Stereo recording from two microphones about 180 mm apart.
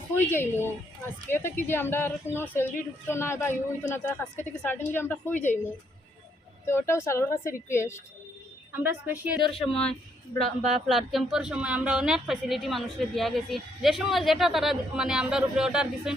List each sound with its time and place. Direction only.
0.2 s a woman's voice: 10° left (ahead or behind)
6.7 s a woman's voice: 15° left (ahead or behind)
8.7 s a woman's voice: 10° right (ahead or behind)